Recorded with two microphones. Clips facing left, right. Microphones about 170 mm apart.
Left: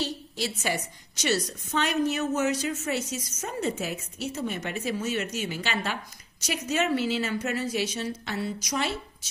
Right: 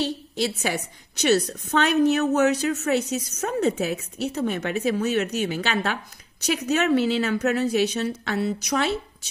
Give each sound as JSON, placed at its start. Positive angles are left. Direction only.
{"t": 0.4, "sound": "a woman's voice", "side_deg": -60}